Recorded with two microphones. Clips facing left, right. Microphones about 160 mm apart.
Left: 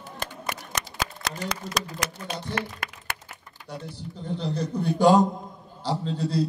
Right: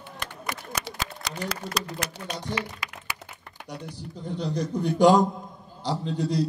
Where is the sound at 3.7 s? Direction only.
15° right (ahead or behind).